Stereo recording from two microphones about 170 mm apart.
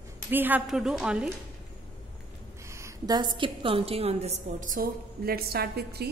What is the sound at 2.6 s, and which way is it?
A woman's voice, 15° right (ahead or behind).